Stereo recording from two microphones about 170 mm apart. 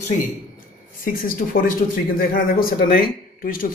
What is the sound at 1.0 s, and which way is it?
Speech, 55° left (ahead or behind).